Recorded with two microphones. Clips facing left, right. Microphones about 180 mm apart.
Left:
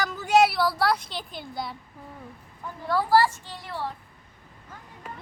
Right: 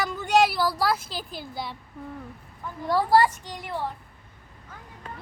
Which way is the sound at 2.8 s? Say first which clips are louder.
Right 1 dB; 20° right (ahead or behind).